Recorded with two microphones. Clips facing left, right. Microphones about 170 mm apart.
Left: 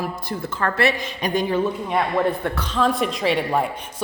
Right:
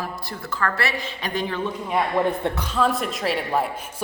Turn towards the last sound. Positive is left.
turn(degrees=0)  # may be behind; listen again after turning